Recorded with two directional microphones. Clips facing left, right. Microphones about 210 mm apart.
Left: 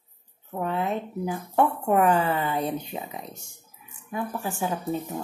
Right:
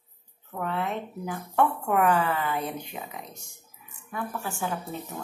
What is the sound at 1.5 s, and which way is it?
Speech, 25° left (ahead or behind).